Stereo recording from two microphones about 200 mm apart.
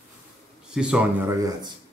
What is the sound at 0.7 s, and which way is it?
Speech, 5° right (ahead or behind).